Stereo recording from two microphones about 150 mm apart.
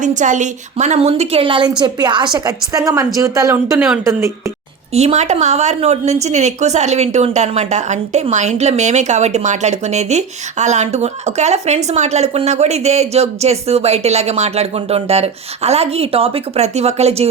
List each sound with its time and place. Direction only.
0.0 s a woman's voice: 55° right (ahead or behind); by 4.5 s 20° right (ahead or behind)
4.9 s a woman's voice: 50° right (ahead or behind)